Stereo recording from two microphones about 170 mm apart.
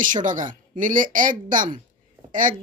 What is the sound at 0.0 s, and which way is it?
A woman's voice, 50° right (ahead or behind).